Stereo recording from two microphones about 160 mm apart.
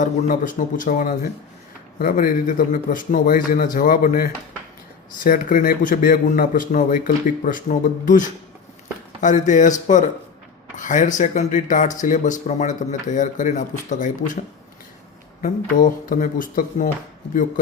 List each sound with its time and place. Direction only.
0.0 s a man's voice: 55° left (ahead or behind)
15.4 s a man's voice: 55° left (ahead or behind)